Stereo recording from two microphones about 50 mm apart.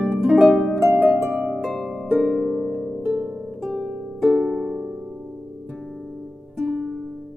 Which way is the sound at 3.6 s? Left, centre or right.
Centre.